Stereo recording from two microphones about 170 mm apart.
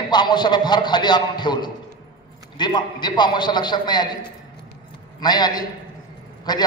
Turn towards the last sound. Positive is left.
turn(degrees=25)  # may be behind; listen again after turning